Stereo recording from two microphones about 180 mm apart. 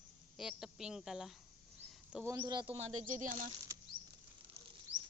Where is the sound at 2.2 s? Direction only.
15° right (ahead or behind); by 3.5 s 45° right (ahead or behind).